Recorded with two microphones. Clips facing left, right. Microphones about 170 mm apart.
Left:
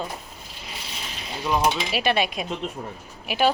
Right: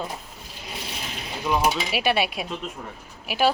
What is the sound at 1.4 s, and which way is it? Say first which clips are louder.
Speech: even; 5° right (ahead or behind).